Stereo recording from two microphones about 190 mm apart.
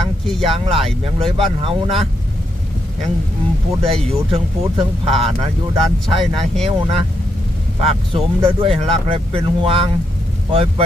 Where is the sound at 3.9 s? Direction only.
30° right (ahead or behind).